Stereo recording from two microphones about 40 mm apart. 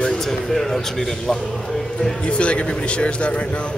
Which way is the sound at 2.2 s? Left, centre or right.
Left.